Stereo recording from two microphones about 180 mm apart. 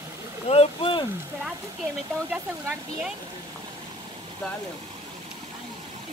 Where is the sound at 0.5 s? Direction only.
30° left (ahead or behind).